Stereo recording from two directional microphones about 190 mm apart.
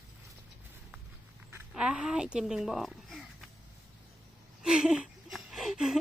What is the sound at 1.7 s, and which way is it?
Speech, 5° right (ahead or behind).